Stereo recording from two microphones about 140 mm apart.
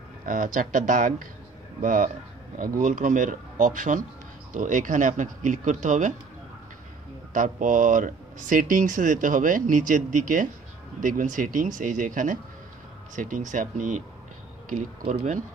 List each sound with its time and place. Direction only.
0.2 s speech: 75° right (ahead or behind)
7.3 s speech: 65° right (ahead or behind)
15.0 s speech: 60° right (ahead or behind)